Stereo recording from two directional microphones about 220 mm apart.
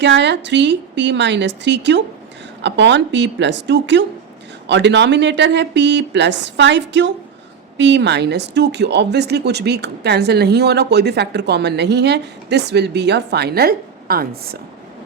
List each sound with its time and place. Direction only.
0.0 s speech: 50° right (ahead or behind)